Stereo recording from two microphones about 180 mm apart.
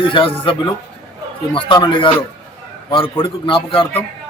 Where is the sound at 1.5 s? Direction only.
25° left (ahead or behind).